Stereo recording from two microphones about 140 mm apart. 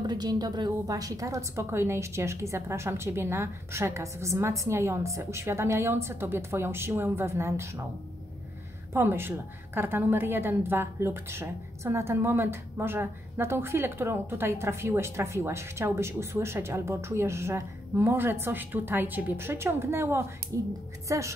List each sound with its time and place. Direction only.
0.0 s a woman's voice: 30° right (ahead or behind)
8.9 s a woman's voice: 15° right (ahead or behind)